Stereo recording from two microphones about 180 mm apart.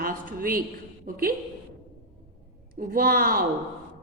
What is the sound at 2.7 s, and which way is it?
Speech, 55° right (ahead or behind).